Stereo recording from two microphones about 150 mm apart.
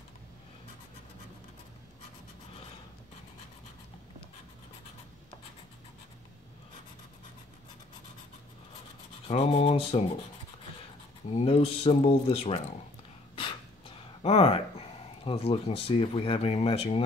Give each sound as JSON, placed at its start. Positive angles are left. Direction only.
{"t": 9.3, "sound": "speech", "side_deg": 40}
{"t": 11.2, "sound": "speech", "side_deg": 40}